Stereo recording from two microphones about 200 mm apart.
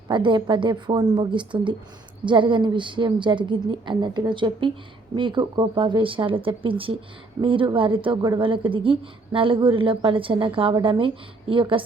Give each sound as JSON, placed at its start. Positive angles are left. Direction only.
{"t": 0.1, "sound": "a woman's voice", "side_deg": -25}